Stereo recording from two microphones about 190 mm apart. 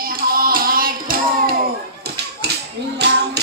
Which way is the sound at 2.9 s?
60° right (ahead or behind).